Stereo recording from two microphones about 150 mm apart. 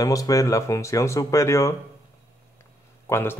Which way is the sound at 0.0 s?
20° left (ahead or behind).